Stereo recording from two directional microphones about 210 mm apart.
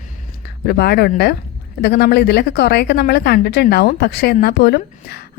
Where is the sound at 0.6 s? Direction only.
50° left (ahead or behind).